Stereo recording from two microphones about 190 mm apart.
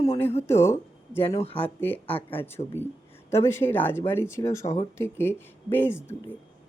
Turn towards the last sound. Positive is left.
turn(degrees=10)  # may be behind; listen again after turning